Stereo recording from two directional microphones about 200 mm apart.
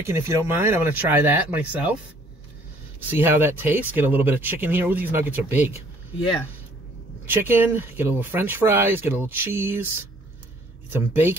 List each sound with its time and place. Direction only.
0.0 s speech: 15° right (ahead or behind)
3.1 s speech: 10° right (ahead or behind)
7.2 s speech: 10° right (ahead or behind)
10.9 s speech: 10° right (ahead or behind)